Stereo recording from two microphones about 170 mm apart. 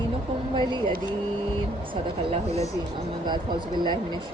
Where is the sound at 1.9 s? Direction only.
35° right (ahead or behind).